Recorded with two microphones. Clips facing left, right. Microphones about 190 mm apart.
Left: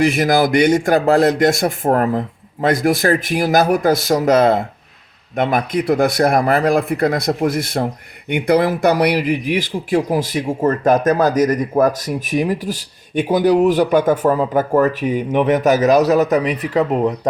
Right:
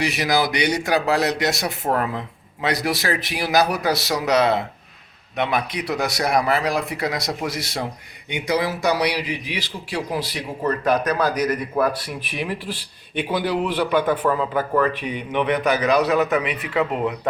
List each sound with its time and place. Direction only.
0.0 s a man's voice: 50° left (ahead or behind)